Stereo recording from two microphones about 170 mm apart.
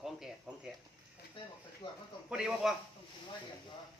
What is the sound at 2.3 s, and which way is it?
Speech, 5° right (ahead or behind).